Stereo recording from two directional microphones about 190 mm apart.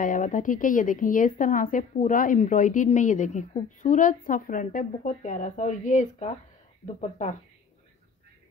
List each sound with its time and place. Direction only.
0.0 s a woman's voice: 45° left (ahead or behind)